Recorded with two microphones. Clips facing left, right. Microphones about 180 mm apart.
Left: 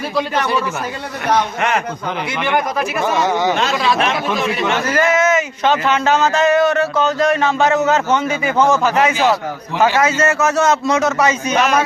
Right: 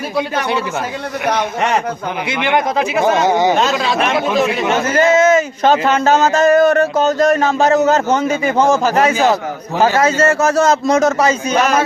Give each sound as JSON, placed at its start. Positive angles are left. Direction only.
{"t": 2.5, "sound": "speech", "side_deg": -20}
{"t": 3.5, "sound": "speech", "side_deg": -40}
{"t": 4.8, "sound": "a man's voice", "side_deg": -25}
{"t": 5.6, "sound": "speech", "side_deg": -40}